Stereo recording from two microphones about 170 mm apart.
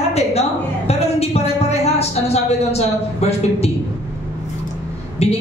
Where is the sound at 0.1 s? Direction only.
40° left (ahead or behind).